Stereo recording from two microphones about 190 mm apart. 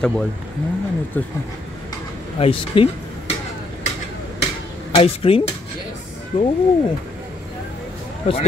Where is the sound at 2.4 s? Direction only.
30° left (ahead or behind).